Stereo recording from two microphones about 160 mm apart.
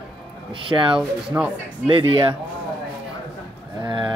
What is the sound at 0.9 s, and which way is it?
Speech, 5° right (ahead or behind).